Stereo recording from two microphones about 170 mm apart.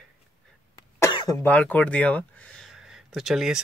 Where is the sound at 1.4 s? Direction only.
10° left (ahead or behind).